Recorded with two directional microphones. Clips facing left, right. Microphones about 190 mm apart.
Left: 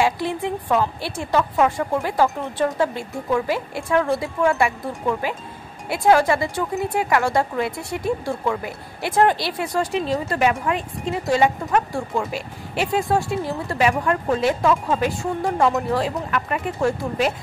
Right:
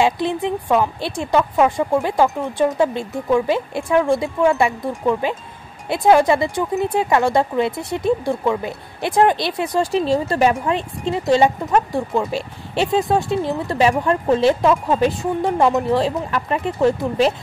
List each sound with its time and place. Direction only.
0.0 s speech: 20° right (ahead or behind)
9.8 s speech: 30° right (ahead or behind)